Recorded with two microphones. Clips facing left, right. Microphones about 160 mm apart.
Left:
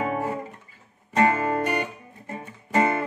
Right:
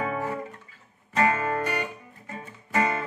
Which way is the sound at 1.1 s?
25° left (ahead or behind).